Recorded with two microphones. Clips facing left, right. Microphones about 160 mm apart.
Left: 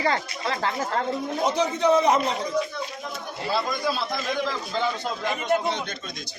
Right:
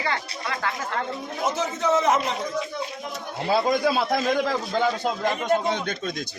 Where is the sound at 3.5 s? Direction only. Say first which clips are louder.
Right 5 dB; 55° right (ahead or behind).